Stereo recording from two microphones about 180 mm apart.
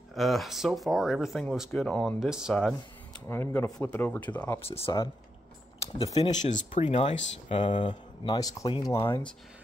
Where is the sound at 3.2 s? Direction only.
10° left (ahead or behind).